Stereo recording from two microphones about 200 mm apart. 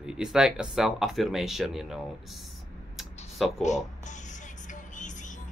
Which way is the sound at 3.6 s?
35° left (ahead or behind).